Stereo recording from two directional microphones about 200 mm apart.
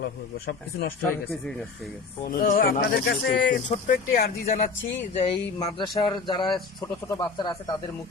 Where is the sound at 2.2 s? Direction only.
45° left (ahead or behind); by 3.6 s 65° left (ahead or behind).